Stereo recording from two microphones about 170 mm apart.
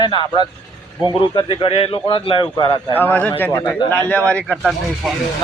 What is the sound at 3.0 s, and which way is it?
Speech, 10° left (ahead or behind).